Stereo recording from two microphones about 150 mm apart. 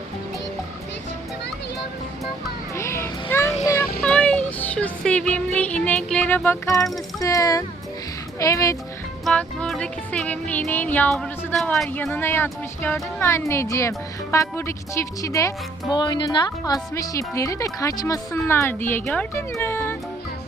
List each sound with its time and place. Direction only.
2.7 s a sound: 20° left (ahead or behind)
4.0 s music: 5° left (ahead or behind)
7.2 s speech: 25° left (ahead or behind)
9.2 s speech: 5° left (ahead or behind)
12.1 s speech: 15° left (ahead or behind)